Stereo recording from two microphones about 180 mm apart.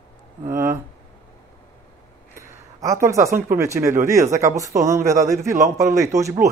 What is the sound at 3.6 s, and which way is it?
A man's voice, 15° right (ahead or behind).